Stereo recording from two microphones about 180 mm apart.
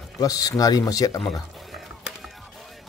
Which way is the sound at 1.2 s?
Centre (ahead or behind).